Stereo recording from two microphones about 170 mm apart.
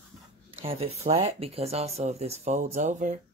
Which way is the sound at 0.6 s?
35° right (ahead or behind).